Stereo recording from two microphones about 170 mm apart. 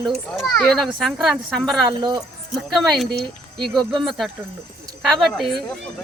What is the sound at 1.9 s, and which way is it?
Speech, 25° right (ahead or behind).